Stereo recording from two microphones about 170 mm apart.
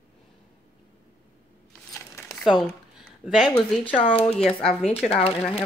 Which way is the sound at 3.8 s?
30° left (ahead or behind).